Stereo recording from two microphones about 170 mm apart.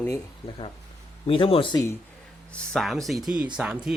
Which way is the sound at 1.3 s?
30° left (ahead or behind).